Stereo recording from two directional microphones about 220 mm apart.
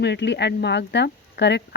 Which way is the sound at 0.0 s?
50° left (ahead or behind).